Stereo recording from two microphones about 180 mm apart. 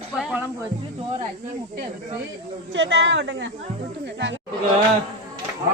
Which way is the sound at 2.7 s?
90° right.